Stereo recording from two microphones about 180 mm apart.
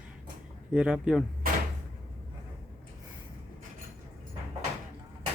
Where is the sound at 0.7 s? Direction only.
5° right (ahead or behind).